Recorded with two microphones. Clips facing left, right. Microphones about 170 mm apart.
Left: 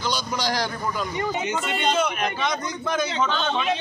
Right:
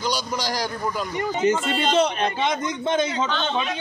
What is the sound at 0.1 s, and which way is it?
Speech, 10° right (ahead or behind).